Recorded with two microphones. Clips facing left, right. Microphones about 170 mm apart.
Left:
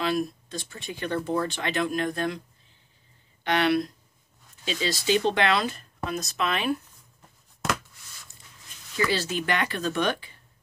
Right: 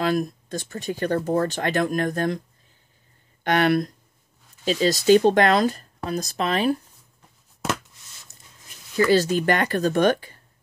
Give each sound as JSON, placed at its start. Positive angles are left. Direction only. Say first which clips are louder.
{"t": 0.0, "sound": "speech", "louder": "right 4 dB", "side_deg": -45}
{"t": 3.4, "sound": "speech", "louder": "right 3 dB", "side_deg": -50}
{"t": 8.9, "sound": "speech", "louder": "right 8 dB", "side_deg": -45}